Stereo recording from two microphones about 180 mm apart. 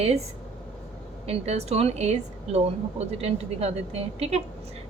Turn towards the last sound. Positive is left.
turn(degrees=-35)  # may be behind; listen again after turning